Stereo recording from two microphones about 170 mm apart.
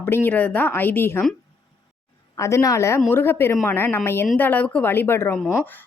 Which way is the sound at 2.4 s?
20° left (ahead or behind).